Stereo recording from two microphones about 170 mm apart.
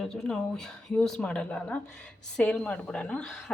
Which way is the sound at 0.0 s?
5° left (ahead or behind).